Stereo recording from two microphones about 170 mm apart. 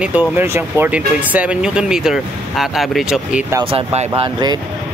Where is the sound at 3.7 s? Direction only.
35° right (ahead or behind).